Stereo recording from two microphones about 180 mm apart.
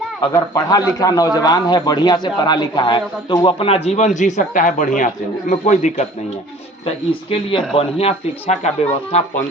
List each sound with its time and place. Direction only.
0.2 s a man's voice: 20° left (ahead or behind); by 8.7 s 35° left (ahead or behind)